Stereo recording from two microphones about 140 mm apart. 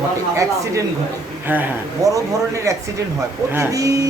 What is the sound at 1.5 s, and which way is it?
Speech, 15° right (ahead or behind).